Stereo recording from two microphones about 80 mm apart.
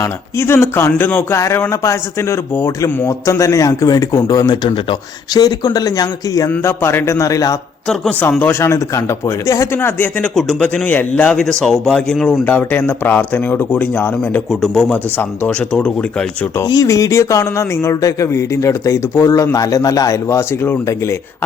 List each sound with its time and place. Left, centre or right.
0.0 s speech: left
5.3 s speech: left
6.6 s speech: left
8.4 s speech: left
9.7 s speech: left
10.2 s speech: centre
10.8 s speech: left
11.3 s speech: centre
12.5 s speech: left
14.5 s speech: centre
14.9 s speech: left
16.8 s speech: left
20.2 s speech: left